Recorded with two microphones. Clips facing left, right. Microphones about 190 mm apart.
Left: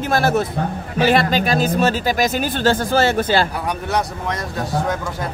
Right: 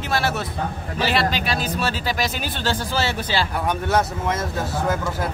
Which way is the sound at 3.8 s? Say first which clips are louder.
Right 1 dB; centre (ahead or behind).